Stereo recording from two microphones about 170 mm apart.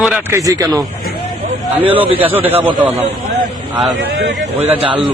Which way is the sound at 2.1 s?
10° right (ahead or behind).